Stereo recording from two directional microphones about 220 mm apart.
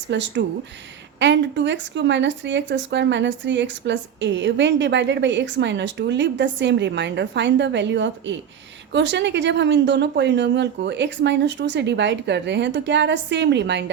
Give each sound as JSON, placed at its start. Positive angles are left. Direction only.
{"t": 0.1, "sound": "speech", "side_deg": -55}